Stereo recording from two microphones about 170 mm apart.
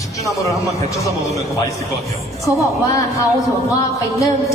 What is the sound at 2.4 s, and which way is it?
Music, 20° left (ahead or behind).